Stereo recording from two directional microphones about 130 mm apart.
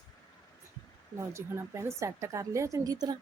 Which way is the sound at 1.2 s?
20° right (ahead or behind).